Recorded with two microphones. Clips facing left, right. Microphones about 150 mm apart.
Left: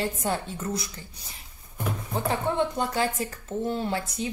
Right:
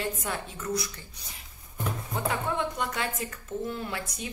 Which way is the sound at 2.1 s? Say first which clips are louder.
Left 4 dB; 30° left (ahead or behind).